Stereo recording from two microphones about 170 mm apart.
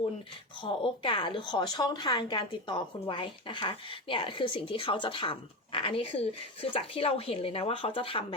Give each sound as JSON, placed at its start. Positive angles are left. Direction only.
{"t": 0.6, "sound": "a woman's voice", "side_deg": 30}